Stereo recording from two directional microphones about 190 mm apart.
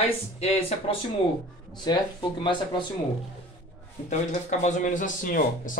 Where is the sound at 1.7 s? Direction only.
20° left (ahead or behind).